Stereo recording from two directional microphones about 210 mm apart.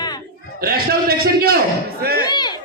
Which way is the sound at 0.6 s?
45° right (ahead or behind).